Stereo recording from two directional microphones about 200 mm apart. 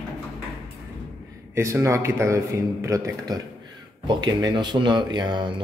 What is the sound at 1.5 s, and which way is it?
A man's voice, 15° right (ahead or behind).